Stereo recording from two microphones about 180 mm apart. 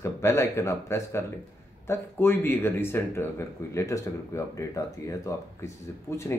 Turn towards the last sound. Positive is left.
turn(degrees=15)  # may be behind; listen again after turning